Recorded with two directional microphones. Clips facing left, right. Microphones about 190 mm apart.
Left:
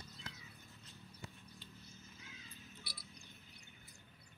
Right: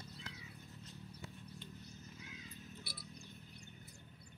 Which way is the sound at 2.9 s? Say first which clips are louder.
Right 4 dB; 50° right (ahead or behind).